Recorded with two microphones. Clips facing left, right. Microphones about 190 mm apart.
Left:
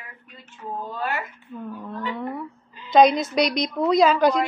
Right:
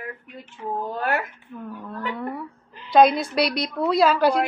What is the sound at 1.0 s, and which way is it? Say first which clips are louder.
Speech: right 4 dB; 55° right (ahead or behind).